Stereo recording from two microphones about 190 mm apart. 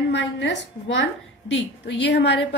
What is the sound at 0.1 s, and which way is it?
A woman's voice, 70° left (ahead or behind).